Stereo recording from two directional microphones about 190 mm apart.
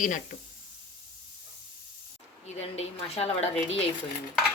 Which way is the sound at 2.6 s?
30° left (ahead or behind).